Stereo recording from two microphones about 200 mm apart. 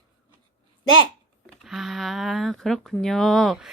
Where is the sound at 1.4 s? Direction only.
Centre (ahead or behind).